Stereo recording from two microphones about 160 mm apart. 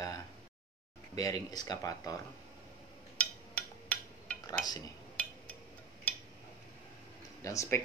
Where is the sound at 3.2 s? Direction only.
10° left (ahead or behind).